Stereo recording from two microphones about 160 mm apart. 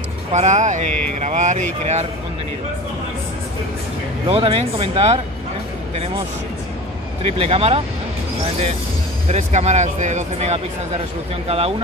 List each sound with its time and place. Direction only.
0.3 s speech: 45° right (ahead or behind)
4.3 s speech: 35° right (ahead or behind)
7.3 s speech: 35° right (ahead or behind)
9.3 s speech: 45° right (ahead or behind)